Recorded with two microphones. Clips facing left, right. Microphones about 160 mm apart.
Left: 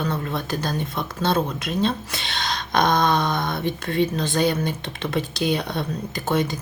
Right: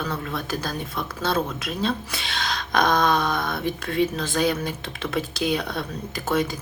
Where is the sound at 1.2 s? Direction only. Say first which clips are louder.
Left 3 dB; 5° right (ahead or behind).